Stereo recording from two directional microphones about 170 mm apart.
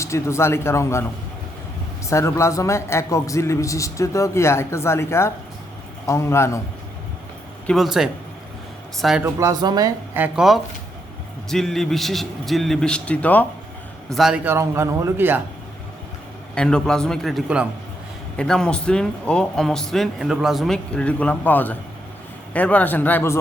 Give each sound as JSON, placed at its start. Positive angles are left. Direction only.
{"t": 0.0, "sound": "a man's voice", "side_deg": 15}
{"t": 2.0, "sound": "a man's voice", "side_deg": 15}
{"t": 7.7, "sound": "speech", "side_deg": 0}
{"t": 9.2, "sound": "speech", "side_deg": -20}
{"t": 10.2, "sound": "speech", "side_deg": -5}
{"t": 14.1, "sound": "a man's voice", "side_deg": 0}
{"t": 16.6, "sound": "a man's voice", "side_deg": 5}